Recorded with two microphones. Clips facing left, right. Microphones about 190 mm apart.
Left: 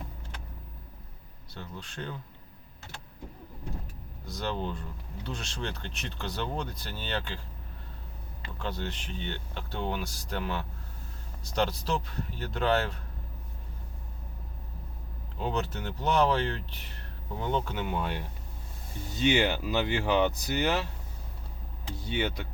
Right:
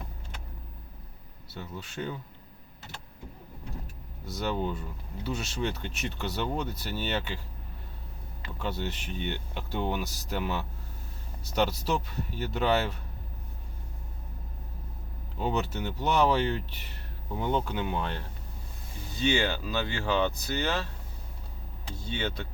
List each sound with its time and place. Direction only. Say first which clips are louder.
1.5 s speech: right 3 dB; 5° right (ahead or behind)
4.3 s speech: right 3 dB; 5° right (ahead or behind)
8.5 s speech: right 2 dB; 5° right (ahead or behind)
15.4 s speech: right 2 dB; 5° right (ahead or behind)
19.1 s speech: left 2 dB; 15° left (ahead or behind)
21.9 s speech: left 2 dB; 15° left (ahead or behind)